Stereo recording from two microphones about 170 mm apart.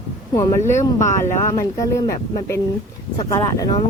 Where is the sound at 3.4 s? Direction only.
25° left (ahead or behind).